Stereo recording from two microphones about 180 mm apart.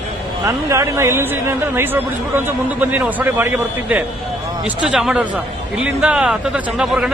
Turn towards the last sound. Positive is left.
turn(degrees=-5)  # may be behind; listen again after turning